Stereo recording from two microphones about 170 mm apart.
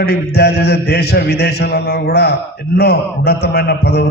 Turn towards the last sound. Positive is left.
turn(degrees=75)  # may be behind; listen again after turning